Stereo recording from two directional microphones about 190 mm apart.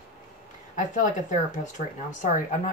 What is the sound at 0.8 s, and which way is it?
Speech, 40° left (ahead or behind).